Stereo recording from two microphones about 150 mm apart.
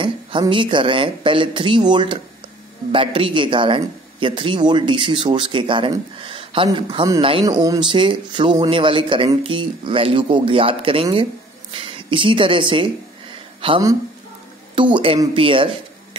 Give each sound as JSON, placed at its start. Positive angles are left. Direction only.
{"t": 0.0, "sound": "a man's voice", "side_deg": -35}
{"t": 7.4, "sound": "a man's voice", "side_deg": -25}